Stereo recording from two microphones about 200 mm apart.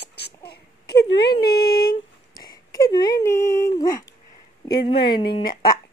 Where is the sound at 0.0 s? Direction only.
55° left (ahead or behind).